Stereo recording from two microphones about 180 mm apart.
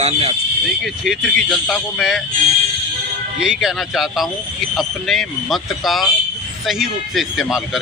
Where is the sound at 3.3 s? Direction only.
5° right (ahead or behind).